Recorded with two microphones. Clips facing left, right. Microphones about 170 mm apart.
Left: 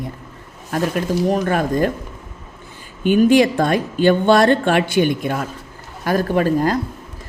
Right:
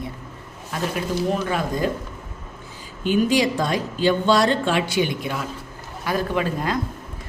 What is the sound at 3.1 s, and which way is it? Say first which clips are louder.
A woman's voice: left 6 dB; 60° left (ahead or behind).